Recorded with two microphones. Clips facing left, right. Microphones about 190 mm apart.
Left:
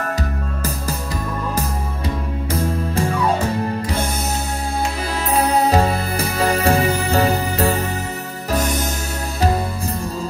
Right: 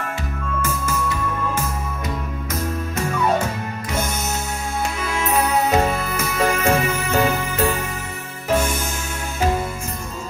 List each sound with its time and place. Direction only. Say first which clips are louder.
0.6 s music: right 4 dB; 35° left (ahead or behind)
5.3 s music: left 3 dB; 35° left (ahead or behind)